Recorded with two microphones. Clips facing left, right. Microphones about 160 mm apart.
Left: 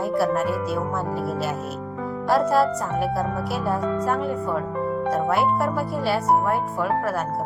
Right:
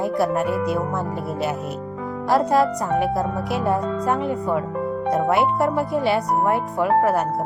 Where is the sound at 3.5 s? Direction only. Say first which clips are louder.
Right 5 dB; centre (ahead or behind).